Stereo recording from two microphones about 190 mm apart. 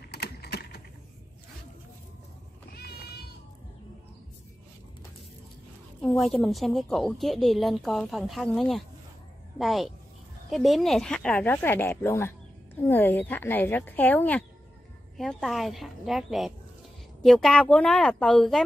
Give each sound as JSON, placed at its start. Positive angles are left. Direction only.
{"t": 0.1, "sound": "typing", "side_deg": 60}
{"t": 5.9, "sound": "a woman's voice", "side_deg": 0}